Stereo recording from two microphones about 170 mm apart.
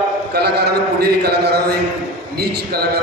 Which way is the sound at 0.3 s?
70° right (ahead or behind).